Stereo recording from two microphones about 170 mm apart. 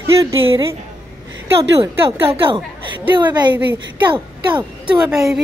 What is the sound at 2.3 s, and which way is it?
A woman's voice, 30° right (ahead or behind).